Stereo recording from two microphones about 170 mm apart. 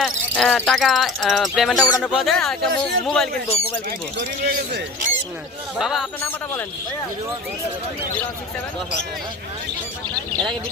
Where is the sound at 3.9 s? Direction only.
75° right (ahead or behind).